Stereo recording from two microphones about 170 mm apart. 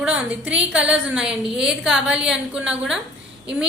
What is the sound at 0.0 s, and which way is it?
A woman's voice, 5° right (ahead or behind).